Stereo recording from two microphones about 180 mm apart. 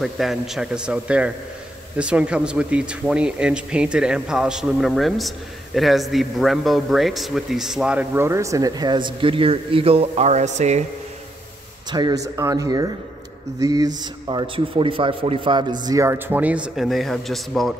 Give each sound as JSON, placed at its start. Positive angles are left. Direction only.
{"t": 0.0, "sound": "speech", "side_deg": 0}
{"t": 11.9, "sound": "speech", "side_deg": -25}